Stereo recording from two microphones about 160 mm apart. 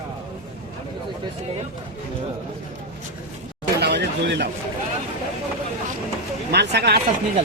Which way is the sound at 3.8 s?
90° right.